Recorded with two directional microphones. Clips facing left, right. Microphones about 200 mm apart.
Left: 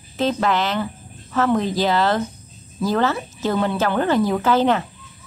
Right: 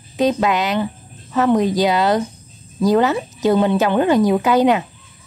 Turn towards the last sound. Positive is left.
turn(degrees=-15)  # may be behind; listen again after turning